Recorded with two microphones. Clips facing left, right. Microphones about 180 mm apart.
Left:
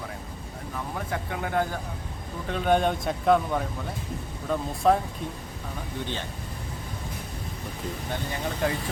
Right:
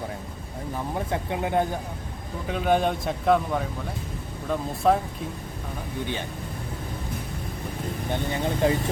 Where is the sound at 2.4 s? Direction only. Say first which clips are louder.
Even; 5° right (ahead or behind).